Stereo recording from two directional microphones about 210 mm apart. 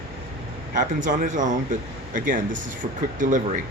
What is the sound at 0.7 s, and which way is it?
Speech, 35° right (ahead or behind).